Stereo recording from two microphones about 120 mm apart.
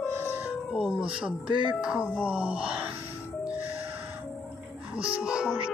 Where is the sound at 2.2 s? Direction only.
10° right (ahead or behind).